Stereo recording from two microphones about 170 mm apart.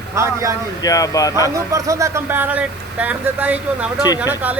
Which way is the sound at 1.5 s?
20° right (ahead or behind).